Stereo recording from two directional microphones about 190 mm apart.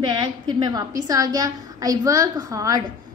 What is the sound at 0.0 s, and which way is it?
A woman's voice, 20° right (ahead or behind).